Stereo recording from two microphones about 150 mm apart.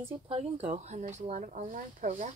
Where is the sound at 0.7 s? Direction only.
50° right (ahead or behind).